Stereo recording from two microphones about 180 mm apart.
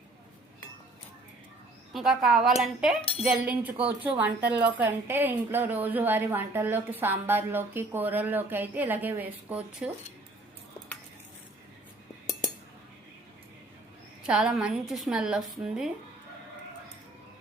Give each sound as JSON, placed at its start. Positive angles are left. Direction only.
{"t": 1.9, "sound": "a woman's voice", "side_deg": 0}
{"t": 14.3, "sound": "a woman's voice", "side_deg": -5}